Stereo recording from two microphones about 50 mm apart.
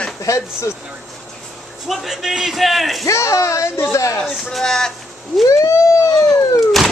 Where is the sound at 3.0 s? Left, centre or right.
Left.